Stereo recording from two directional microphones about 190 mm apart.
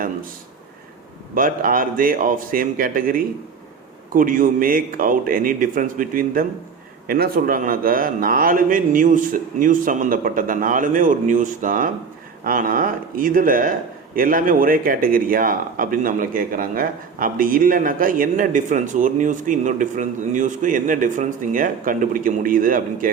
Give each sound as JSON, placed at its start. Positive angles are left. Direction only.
{"t": 1.4, "sound": "speech", "side_deg": -50}